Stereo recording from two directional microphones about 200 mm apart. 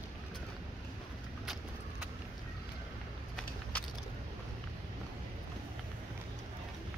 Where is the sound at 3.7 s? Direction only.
5° left (ahead or behind).